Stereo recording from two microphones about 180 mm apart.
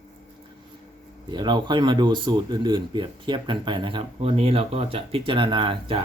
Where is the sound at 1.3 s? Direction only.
25° right (ahead or behind).